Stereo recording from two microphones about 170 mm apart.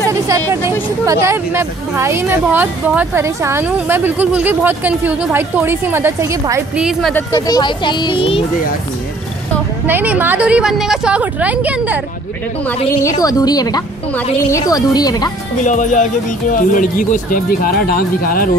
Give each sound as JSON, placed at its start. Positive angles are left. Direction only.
{"t": 0.1, "sound": "speech", "side_deg": -15}
{"t": 6.8, "sound": "speech", "side_deg": 0}
{"t": 7.3, "sound": "speech", "side_deg": 25}
{"t": 9.8, "sound": "speech", "side_deg": -10}
{"t": 13.2, "sound": "speech", "side_deg": 20}
{"t": 15.6, "sound": "speech", "side_deg": 45}